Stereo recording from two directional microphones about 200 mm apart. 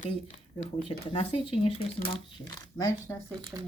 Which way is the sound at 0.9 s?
25° left (ahead or behind).